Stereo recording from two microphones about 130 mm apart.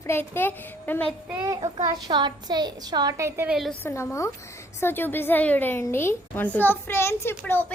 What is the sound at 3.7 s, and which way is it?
A child's voice, 20° left (ahead or behind).